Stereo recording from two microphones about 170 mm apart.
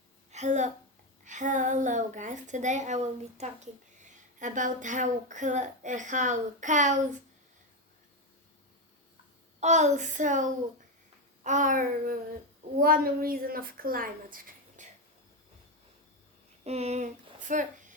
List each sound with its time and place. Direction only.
0.3 s a woman's voice: 45° right (ahead or behind)
9.6 s a woman's voice: 45° right (ahead or behind)
16.6 s speech: 40° right (ahead or behind)